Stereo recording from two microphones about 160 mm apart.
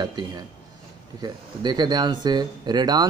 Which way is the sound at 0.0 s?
25° right (ahead or behind).